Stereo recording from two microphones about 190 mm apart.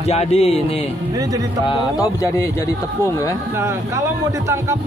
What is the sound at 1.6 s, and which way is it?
Speech, 20° left (ahead or behind).